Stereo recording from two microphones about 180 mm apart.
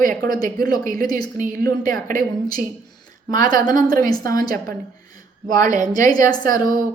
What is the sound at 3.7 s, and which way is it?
Speech, 50° right (ahead or behind).